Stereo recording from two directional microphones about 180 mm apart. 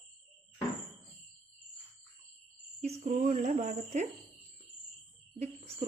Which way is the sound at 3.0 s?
40° right (ahead or behind).